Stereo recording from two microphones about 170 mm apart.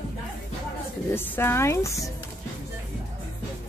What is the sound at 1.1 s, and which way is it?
Speech, 15° left (ahead or behind).